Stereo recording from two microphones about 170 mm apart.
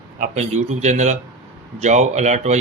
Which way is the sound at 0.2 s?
45° right (ahead or behind).